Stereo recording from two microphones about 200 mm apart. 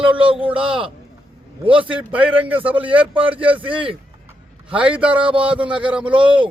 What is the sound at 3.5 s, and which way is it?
Speech, 25° right (ahead or behind).